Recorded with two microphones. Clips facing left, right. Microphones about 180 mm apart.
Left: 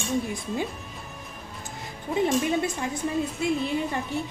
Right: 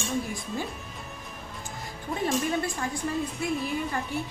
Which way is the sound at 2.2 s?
20° left (ahead or behind).